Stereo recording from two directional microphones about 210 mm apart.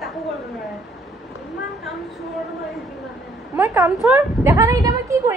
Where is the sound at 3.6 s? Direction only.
15° right (ahead or behind).